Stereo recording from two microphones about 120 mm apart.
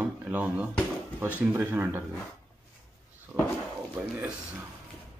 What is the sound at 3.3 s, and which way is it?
Speech, 35° right (ahead or behind).